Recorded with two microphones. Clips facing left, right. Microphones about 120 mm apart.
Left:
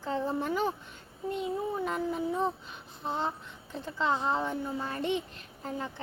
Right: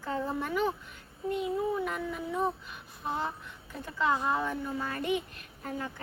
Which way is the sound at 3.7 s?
25° left (ahead or behind).